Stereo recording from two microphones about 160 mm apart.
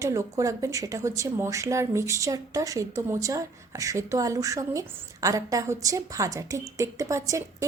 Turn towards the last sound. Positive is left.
turn(degrees=-20)  # may be behind; listen again after turning